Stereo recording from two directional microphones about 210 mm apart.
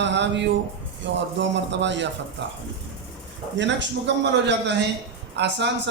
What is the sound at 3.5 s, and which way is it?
Speech, 55° right (ahead or behind).